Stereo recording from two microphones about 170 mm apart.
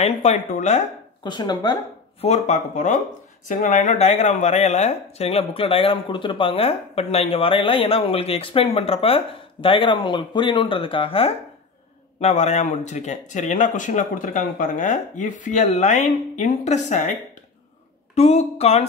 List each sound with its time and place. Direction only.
0.0 s speech: 40° left (ahead or behind)
1.2 s speech: 25° left (ahead or behind)
2.2 s speech: 40° left (ahead or behind)